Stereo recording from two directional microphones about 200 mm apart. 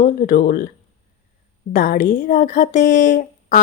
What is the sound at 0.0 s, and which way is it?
Speech, 40° left (ahead or behind).